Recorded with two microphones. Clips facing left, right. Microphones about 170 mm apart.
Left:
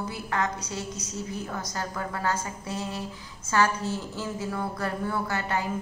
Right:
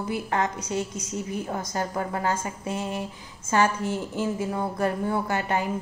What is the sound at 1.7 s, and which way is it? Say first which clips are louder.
A woman's voice: right 5 dB; 20° right (ahead or behind).